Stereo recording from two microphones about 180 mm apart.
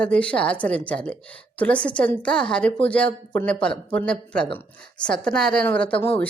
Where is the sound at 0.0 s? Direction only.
5° left (ahead or behind).